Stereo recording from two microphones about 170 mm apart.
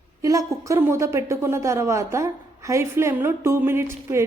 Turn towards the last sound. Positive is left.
turn(degrees=-15)  # may be behind; listen again after turning